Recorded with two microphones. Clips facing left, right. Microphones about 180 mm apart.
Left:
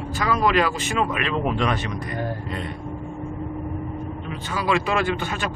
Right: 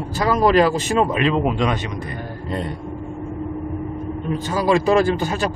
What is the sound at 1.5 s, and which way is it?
Speech, 15° right (ahead or behind).